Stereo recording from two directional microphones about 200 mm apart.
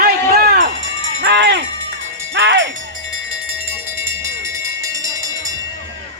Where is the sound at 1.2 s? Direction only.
60° right (ahead or behind).